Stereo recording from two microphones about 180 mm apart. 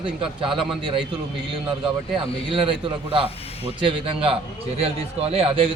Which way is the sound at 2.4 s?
30° right (ahead or behind).